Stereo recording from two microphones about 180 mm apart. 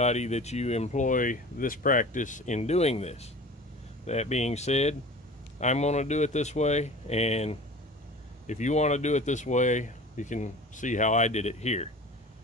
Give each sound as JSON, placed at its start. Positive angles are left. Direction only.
{"t": 0.0, "sound": "speech", "side_deg": 40}